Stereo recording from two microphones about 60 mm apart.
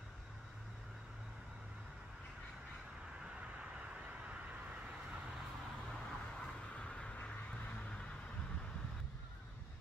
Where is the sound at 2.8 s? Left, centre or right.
Centre.